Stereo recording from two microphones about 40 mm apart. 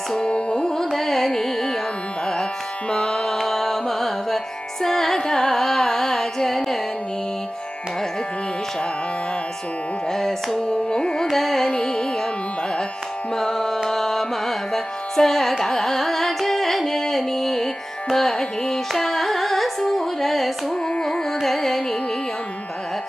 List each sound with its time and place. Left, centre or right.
0.2 s carnatic music: left
0.7 s carnatic music: centre
2.9 s music: left
3.3 s carnatic music: centre
4.8 s music: centre
10.1 s carnatic music: centre
11.2 s carnatic music: centre
11.6 s music: centre
13.4 s music: centre
15.6 s carnatic music: centre
18.9 s music: centre